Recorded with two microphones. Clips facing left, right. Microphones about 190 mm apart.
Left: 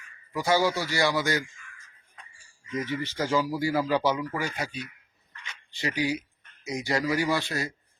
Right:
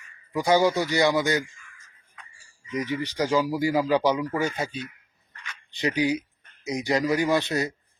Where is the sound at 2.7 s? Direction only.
15° right (ahead or behind).